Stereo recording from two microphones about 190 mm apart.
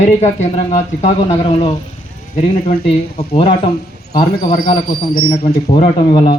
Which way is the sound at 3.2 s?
30° left (ahead or behind).